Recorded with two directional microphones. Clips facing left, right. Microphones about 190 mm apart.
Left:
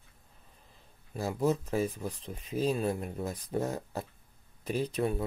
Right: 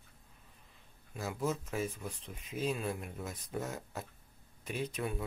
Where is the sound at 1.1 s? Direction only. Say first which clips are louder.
Left 7 dB; 35° left (ahead or behind).